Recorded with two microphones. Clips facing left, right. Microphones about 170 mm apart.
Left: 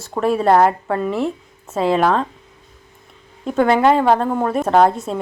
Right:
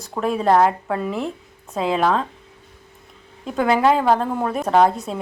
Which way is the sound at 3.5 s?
Centre (ahead or behind).